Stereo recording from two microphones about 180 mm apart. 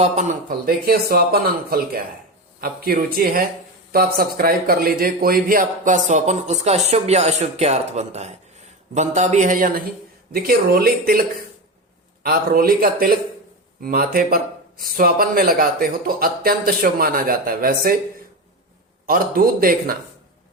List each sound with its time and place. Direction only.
0.0 s speech: 45° right (ahead or behind)
12.2 s speech: 55° right (ahead or behind)
19.0 s speech: 55° right (ahead or behind)